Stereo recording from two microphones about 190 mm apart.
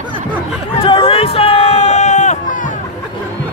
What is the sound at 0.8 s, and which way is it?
Speech, 30° left (ahead or behind).